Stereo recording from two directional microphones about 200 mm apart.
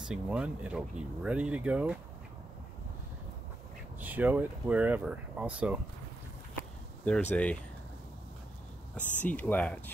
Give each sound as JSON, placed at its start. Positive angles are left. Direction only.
{"t": 0.0, "sound": "speech", "side_deg": -5}
{"t": 4.0, "sound": "speech", "side_deg": -10}
{"t": 7.1, "sound": "speech", "side_deg": 5}
{"t": 8.9, "sound": "speech", "side_deg": 10}